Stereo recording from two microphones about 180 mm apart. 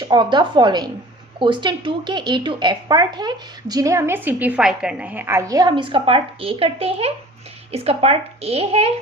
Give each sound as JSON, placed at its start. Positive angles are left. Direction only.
{"t": 0.0, "sound": "speech", "side_deg": -25}